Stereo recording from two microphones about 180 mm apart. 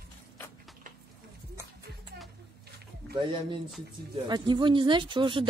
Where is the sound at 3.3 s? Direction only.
30° right (ahead or behind).